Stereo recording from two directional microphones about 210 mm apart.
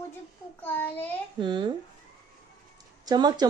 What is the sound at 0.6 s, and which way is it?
Speech, 10° left (ahead or behind).